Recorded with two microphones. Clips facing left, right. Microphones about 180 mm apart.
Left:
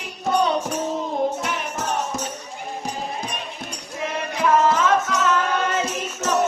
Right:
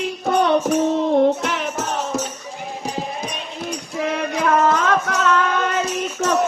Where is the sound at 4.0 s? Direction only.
60° right (ahead or behind).